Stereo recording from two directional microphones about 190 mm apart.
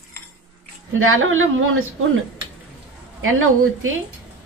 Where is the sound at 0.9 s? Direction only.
90° right.